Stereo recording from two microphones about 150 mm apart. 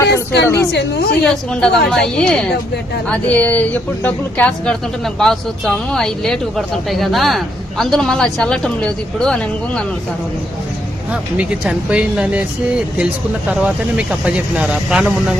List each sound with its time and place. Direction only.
0.0 s speech: 15° left (ahead or behind)
1.2 s speech: 5° left (ahead or behind)
11.1 s speech: 10° right (ahead or behind)
13.5 s speech: 5° right (ahead or behind)